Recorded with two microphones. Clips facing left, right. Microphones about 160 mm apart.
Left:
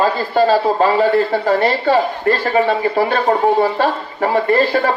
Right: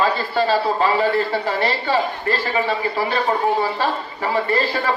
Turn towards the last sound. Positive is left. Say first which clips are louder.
# left 6 dB
turn(degrees=50)  # may be behind; listen again after turning